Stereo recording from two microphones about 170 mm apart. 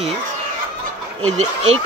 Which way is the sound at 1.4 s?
40° right (ahead or behind).